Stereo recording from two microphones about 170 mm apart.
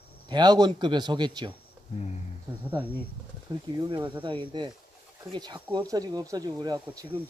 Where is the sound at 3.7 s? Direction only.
25° right (ahead or behind).